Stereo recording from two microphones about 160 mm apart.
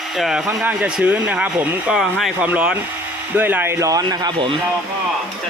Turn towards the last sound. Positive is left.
turn(degrees=-30)  # may be behind; listen again after turning